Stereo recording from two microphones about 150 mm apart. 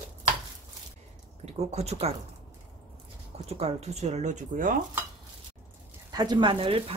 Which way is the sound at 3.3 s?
45° right (ahead or behind).